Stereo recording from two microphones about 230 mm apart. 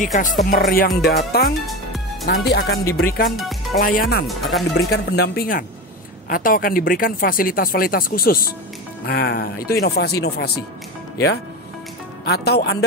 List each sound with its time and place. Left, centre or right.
0.0 s speech: left
3.3 s speech: centre
3.8 s speech: left
4.3 s speech: centre
4.9 s speech: left
12.3 s speech: left